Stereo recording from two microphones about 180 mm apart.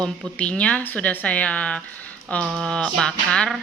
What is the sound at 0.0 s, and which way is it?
Speech, 5° left (ahead or behind).